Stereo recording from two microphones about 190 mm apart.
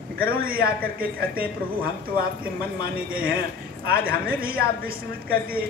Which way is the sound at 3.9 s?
50° right (ahead or behind).